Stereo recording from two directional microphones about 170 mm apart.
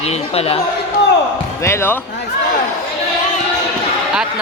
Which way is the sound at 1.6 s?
15° left (ahead or behind).